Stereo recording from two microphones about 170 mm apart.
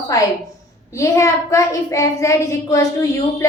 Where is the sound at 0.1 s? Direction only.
20° left (ahead or behind).